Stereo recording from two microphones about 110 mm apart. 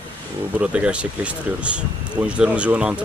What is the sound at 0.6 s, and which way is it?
Speech, 10° right (ahead or behind).